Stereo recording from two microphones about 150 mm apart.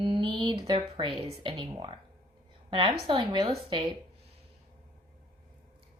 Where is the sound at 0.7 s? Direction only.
35° right (ahead or behind).